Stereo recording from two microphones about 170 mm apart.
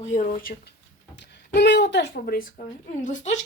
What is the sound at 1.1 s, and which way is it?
Speech, 90° left.